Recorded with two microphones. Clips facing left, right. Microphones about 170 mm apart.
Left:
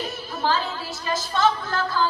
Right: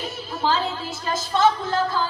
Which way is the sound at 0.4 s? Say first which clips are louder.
Right 1 dB; 20° right (ahead or behind).